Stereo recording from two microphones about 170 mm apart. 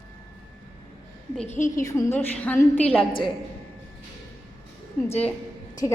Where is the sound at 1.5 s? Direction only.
50° left (ahead or behind).